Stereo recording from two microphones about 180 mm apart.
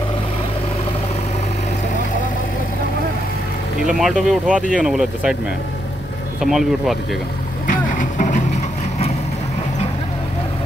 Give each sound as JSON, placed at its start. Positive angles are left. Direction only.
{"t": 3.8, "sound": "speech", "side_deg": -5}
{"t": 6.4, "sound": "speech", "side_deg": 0}
{"t": 7.6, "sound": "vehicle", "side_deg": 45}